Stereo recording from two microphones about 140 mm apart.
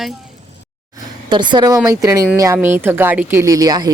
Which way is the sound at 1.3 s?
35° right (ahead or behind).